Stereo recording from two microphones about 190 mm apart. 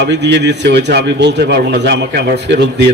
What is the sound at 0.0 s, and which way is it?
A man's voice, 65° right (ahead or behind).